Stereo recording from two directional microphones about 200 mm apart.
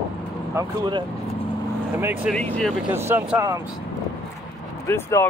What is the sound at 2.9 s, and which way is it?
Speech, 10° right (ahead or behind).